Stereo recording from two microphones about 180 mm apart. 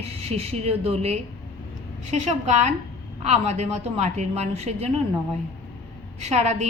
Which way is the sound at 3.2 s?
40° right (ahead or behind).